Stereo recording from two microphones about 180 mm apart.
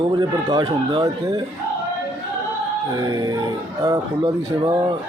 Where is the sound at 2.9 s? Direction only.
20° right (ahead or behind).